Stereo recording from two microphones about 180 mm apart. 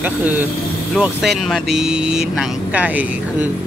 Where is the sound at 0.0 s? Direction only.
10° right (ahead or behind).